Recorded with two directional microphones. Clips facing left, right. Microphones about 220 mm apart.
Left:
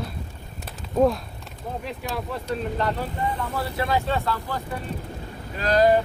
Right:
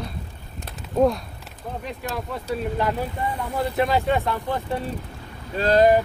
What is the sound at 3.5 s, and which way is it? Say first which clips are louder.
Speech: right 7 dB; 20° right (ahead or behind).